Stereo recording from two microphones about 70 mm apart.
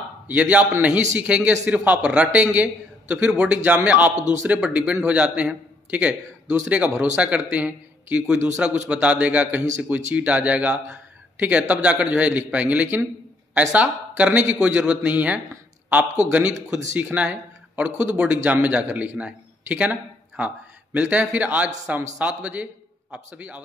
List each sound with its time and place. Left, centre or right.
0.3 s a man's voice: centre